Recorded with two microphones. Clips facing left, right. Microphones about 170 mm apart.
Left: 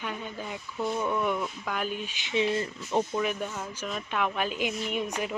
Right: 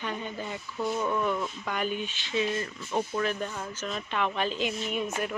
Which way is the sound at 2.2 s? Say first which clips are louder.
Left 3 dB; 25° left (ahead or behind).